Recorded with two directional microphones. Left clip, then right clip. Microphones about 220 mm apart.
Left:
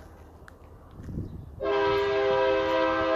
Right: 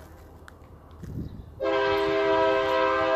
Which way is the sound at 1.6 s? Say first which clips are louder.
Right 1 dB; 35° right (ahead or behind).